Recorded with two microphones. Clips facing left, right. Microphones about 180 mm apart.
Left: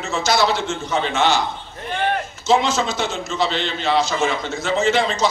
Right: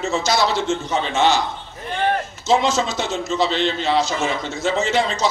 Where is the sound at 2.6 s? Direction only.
40° right (ahead or behind).